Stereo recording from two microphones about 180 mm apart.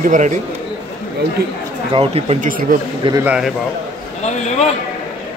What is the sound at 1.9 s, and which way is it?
Speech, 30° right (ahead or behind).